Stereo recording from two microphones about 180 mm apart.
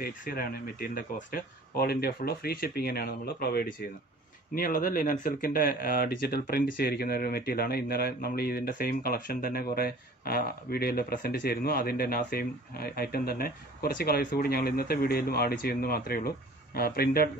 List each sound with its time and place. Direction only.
0.0 s speech: 55° left (ahead or behind)